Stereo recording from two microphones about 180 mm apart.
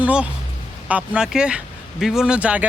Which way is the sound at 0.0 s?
5° right (ahead or behind).